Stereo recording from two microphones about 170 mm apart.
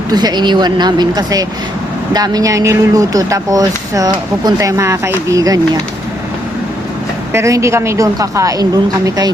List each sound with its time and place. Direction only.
0.1 s speech: 25° right (ahead or behind)
7.3 s speech: 15° right (ahead or behind)